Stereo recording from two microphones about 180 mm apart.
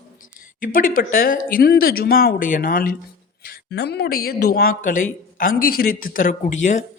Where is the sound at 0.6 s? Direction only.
50° left (ahead or behind).